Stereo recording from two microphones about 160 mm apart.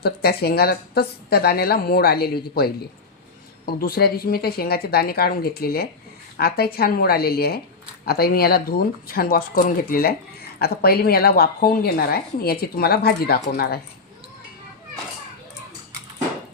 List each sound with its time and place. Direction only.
0.0 s a woman's voice: 80° left
10.6 s a woman's voice: 80° left